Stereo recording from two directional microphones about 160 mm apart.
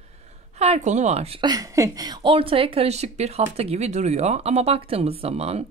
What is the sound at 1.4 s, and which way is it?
A woman's voice, 25° right (ahead or behind).